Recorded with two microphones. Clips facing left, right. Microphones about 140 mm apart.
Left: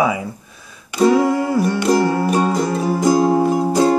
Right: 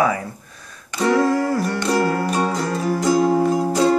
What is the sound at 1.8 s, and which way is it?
Music, 20° left (ahead or behind).